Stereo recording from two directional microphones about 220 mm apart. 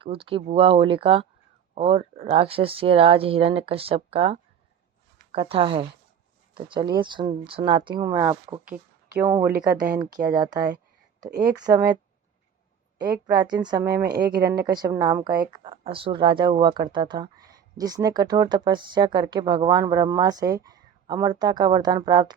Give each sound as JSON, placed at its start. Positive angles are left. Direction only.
{"t": 0.0, "sound": "speech", "side_deg": -25}
{"t": 11.3, "sound": "speech", "side_deg": -45}
{"t": 11.6, "sound": "speech", "side_deg": -15}
{"t": 13.2, "sound": "speech", "side_deg": -20}
{"t": 14.1, "sound": "speech", "side_deg": -45}
{"t": 14.6, "sound": "speech", "side_deg": -15}